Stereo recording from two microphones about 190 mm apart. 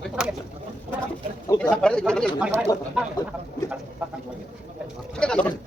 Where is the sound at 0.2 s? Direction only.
5° right (ahead or behind).